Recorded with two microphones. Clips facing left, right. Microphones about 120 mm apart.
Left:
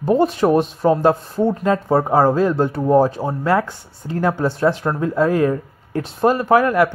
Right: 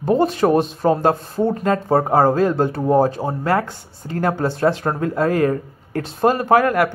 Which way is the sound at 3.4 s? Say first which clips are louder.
Left 2 dB; 50° right (ahead or behind).